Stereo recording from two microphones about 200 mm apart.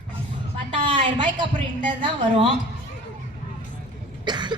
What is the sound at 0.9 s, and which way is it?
Speech, 25° right (ahead or behind).